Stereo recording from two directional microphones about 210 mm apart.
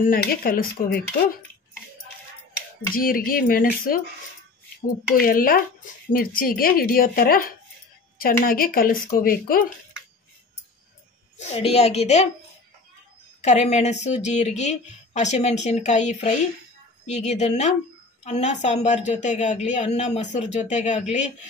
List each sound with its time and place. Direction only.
0.0 s speech: 45° left (ahead or behind)
2.9 s speech: 40° left (ahead or behind)
5.1 s speech: 45° left (ahead or behind)
11.3 s a woman's voice: 30° left (ahead or behind)
13.4 s a woman's voice: 35° left (ahead or behind)